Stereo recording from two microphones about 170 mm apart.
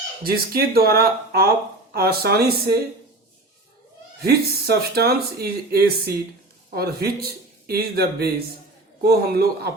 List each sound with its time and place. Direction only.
0.3 s speech: 65° right (ahead or behind)
4.2 s a man's voice: 70° right (ahead or behind)